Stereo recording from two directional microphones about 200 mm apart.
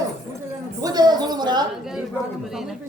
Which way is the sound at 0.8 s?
20° right (ahead or behind).